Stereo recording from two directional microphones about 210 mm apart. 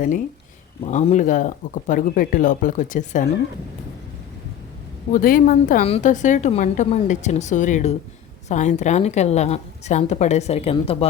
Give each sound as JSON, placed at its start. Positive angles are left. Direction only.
{"t": 0.9, "sound": "a woman's voice", "side_deg": 35}
{"t": 5.1, "sound": "a woman's voice", "side_deg": 40}